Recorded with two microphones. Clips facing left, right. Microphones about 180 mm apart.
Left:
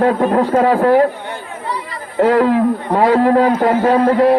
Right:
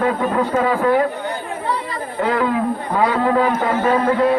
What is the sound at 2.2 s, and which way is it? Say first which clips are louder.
A man's voice: left 7 dB; 40° left (ahead or behind).